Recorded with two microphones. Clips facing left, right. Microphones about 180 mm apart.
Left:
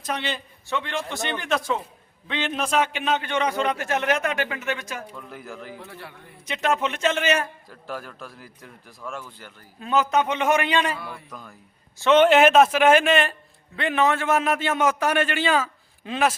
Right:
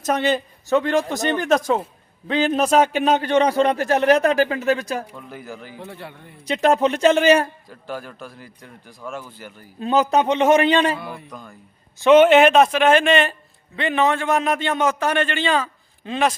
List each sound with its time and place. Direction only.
0.0 s a man's voice: 45° right (ahead or behind)
5.3 s a man's voice: centre (ahead or behind)
5.8 s a man's voice: 25° right (ahead or behind)
7.7 s a man's voice: centre (ahead or behind)
9.2 s speech: 15° right (ahead or behind)
9.8 s a man's voice: 35° right (ahead or behind); by 16.3 s 5° left (ahead or behind)